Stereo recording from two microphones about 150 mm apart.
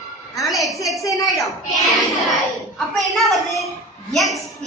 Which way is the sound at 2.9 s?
Centre (ahead or behind).